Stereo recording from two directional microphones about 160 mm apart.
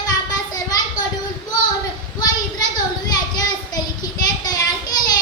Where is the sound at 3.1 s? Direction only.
25° left (ahead or behind).